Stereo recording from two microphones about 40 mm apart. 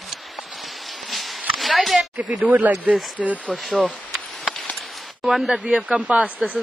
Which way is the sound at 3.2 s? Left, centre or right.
Right.